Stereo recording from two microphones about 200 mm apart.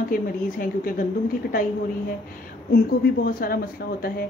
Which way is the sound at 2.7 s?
50° left (ahead or behind).